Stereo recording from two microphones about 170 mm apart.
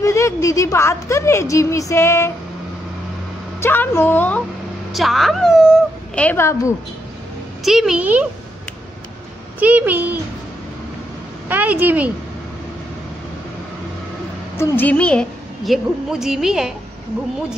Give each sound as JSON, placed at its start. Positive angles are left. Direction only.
{"t": 0.0, "sound": "a woman's voice", "side_deg": 15}
{"t": 3.6, "sound": "a woman's voice", "side_deg": 15}
{"t": 4.9, "sound": "a woman's voice", "side_deg": 0}
{"t": 6.1, "sound": "a woman's voice", "side_deg": 10}
{"t": 7.6, "sound": "a woman's voice", "side_deg": -5}
{"t": 9.6, "sound": "a child's voice", "side_deg": -10}
{"t": 11.4, "sound": "speech", "side_deg": -10}
{"t": 14.6, "sound": "a woman's voice", "side_deg": 10}